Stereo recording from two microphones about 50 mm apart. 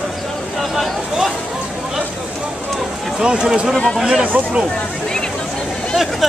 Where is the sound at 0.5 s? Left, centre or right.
Centre.